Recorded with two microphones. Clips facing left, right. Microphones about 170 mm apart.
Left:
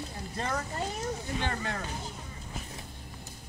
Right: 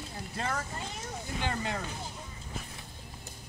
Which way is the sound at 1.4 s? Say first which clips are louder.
Right 3 dB; 15° right (ahead or behind).